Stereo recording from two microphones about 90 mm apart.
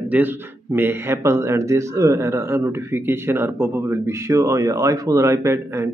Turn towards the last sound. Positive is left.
turn(degrees=-30)  # may be behind; listen again after turning